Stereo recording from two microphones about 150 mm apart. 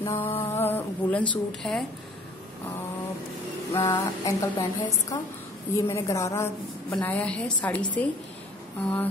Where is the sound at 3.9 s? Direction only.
15° left (ahead or behind).